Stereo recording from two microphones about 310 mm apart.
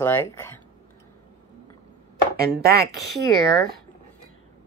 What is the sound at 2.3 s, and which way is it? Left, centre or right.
Speech, right.